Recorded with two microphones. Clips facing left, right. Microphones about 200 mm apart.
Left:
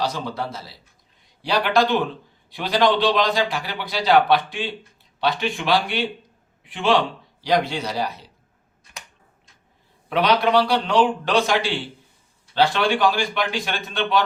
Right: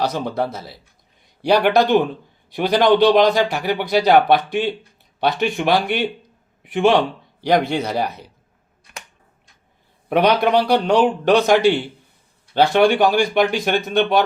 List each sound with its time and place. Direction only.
0.0 s a man's voice: 55° right (ahead or behind)
7.4 s speech: 55° right (ahead or behind)
10.1 s speech: 55° right (ahead or behind)
10.6 s a man's voice: 45° right (ahead or behind)